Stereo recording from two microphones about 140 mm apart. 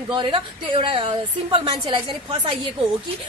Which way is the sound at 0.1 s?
35° right (ahead or behind).